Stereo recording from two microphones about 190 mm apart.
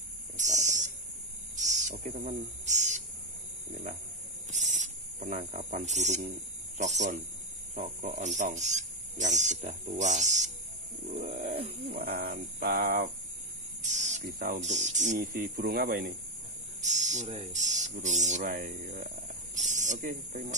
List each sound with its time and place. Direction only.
0.4 s a sound: 40° right (ahead or behind)
1.6 s cricket: 40° right (ahead or behind)
4.5 s cricket: 40° right (ahead or behind)
5.5 s speech: 40° right (ahead or behind)
11.5 s speech: 30° right (ahead or behind)
12.0 s speech: 55° right (ahead or behind)
13.8 s speech: 40° right (ahead or behind)
16.8 s speech: 40° right (ahead or behind)